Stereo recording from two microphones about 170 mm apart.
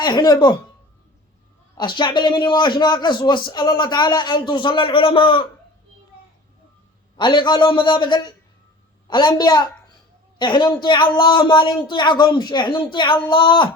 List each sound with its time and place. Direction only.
0.0 s a man's voice: 25° left (ahead or behind)
1.8 s a man's voice: 25° left (ahead or behind)
7.2 s a man's voice: 25° left (ahead or behind)